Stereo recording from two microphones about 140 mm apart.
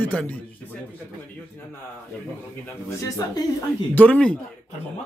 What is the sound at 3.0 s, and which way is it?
Speech, 25° left (ahead or behind).